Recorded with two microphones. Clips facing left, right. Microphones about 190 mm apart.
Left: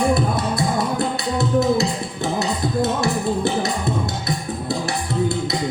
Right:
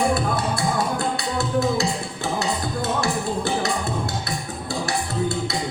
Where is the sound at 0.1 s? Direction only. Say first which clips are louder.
Left 3 dB; 20° left (ahead or behind).